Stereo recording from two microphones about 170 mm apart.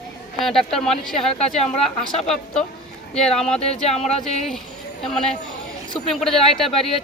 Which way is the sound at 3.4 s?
5° left (ahead or behind).